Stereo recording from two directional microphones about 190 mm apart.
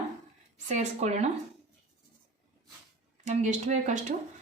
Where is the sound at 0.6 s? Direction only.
35° right (ahead or behind).